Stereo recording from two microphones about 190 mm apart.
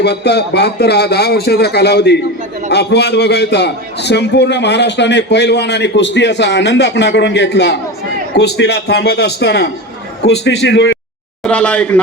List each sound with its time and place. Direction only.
0.0 s a man's voice: 60° left (ahead or behind)
11.4 s speech: 5° left (ahead or behind)